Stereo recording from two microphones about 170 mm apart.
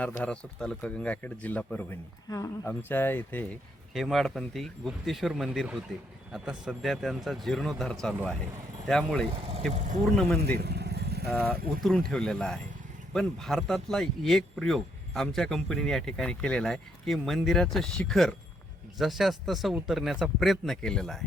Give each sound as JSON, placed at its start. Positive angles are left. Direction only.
{"t": 0.2, "sound": "speech", "side_deg": 5}
{"t": 3.9, "sound": "speech", "side_deg": 0}
{"t": 9.3, "sound": "speech", "side_deg": -35}
{"t": 10.6, "sound": "vehicle", "side_deg": -75}
{"t": 11.5, "sound": "speech", "side_deg": -60}
{"t": 11.8, "sound": "speech", "side_deg": 0}